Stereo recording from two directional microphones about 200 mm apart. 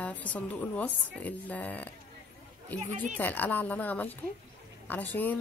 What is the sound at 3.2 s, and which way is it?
A woman's voice, 10° left (ahead or behind).